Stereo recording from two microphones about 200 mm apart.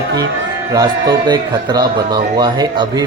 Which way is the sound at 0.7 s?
20° right (ahead or behind).